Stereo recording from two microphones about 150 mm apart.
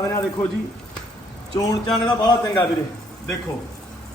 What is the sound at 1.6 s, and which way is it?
A man's voice, 25° left (ahead or behind).